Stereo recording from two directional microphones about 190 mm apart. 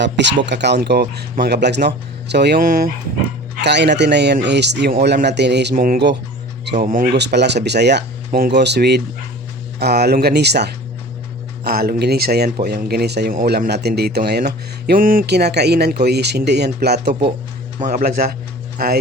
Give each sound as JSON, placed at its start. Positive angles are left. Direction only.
{"t": 0.0, "sound": "speech", "side_deg": -70}
{"t": 3.6, "sound": "speech", "side_deg": -65}
{"t": 13.3, "sound": "speech", "side_deg": -50}
{"t": 17.7, "sound": "a man's voice", "side_deg": -45}